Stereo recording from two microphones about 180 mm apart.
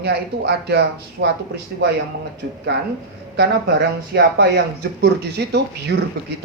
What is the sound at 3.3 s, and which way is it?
Speech, 70° right (ahead or behind).